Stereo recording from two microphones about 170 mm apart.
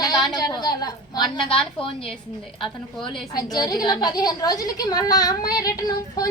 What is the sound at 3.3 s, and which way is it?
A woman's voice, 25° left (ahead or behind).